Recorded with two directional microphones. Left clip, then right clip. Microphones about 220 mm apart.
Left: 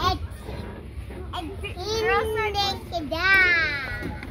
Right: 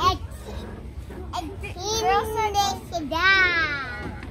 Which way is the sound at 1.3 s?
50° right (ahead or behind).